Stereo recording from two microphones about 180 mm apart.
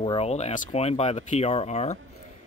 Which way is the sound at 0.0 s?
30° left (ahead or behind).